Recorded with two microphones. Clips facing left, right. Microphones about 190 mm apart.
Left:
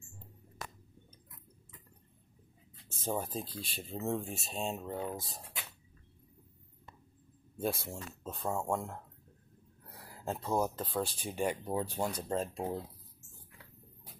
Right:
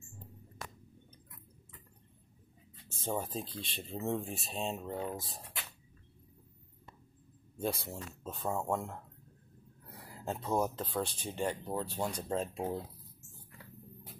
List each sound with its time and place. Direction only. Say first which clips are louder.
3.0 s speech: even; 5° left (ahead or behind)
7.5 s speech: left 1 dB; 5° left (ahead or behind)
10.2 s speech: even; centre (ahead or behind)